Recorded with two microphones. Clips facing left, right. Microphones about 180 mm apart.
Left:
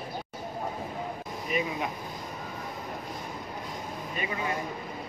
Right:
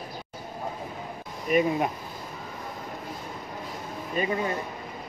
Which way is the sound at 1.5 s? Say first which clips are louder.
Right 8 dB; 55° right (ahead or behind).